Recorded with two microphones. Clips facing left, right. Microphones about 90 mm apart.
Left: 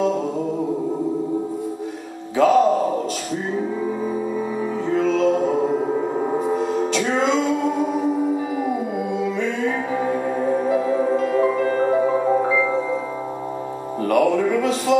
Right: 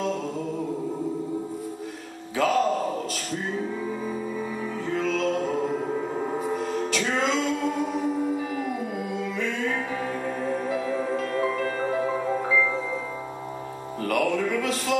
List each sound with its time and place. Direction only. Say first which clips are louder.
0.0 s music: left 7 dB; 5° left (ahead or behind)
2.3 s music: left 7 dB; 5° left (ahead or behind)
14.0 s music: left 7 dB; 5° left (ahead or behind)